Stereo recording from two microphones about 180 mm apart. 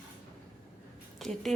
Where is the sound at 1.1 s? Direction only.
Centre (ahead or behind).